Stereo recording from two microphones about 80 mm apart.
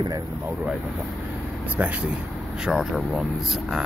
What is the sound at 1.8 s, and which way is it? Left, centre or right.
Speech, centre.